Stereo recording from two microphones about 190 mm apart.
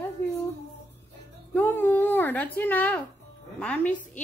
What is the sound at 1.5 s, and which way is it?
Speech, 10° left (ahead or behind).